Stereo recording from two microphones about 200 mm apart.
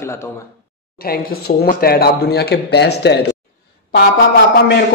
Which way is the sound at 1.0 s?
50° left (ahead or behind).